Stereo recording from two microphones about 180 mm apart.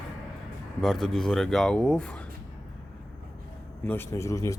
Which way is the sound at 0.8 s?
Centre (ahead or behind).